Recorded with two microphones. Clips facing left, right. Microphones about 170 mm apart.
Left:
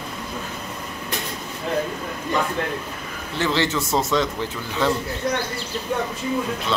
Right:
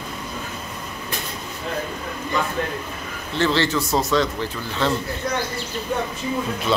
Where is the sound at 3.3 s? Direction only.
15° left (ahead or behind).